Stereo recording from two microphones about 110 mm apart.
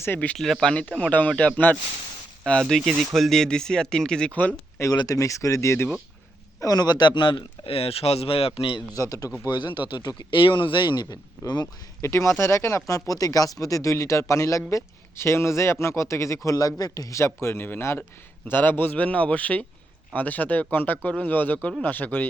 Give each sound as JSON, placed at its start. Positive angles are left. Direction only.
{"t": 0.0, "sound": "speech", "side_deg": 15}
{"t": 4.9, "sound": "speech", "side_deg": 30}
{"t": 6.6, "sound": "a man's voice", "side_deg": 35}
{"t": 9.0, "sound": "a man's voice", "side_deg": 30}
{"t": 9.5, "sound": "a man's voice", "side_deg": 45}
{"t": 12.0, "sound": "speech", "side_deg": 25}